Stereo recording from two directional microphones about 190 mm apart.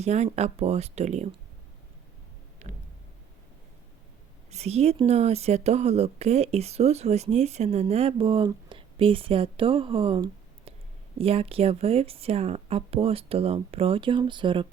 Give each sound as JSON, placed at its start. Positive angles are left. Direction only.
{"t": 0.0, "sound": "speech", "side_deg": -35}
{"t": 2.6, "sound": "a sound", "side_deg": -40}
{"t": 4.5, "sound": "speech", "side_deg": -35}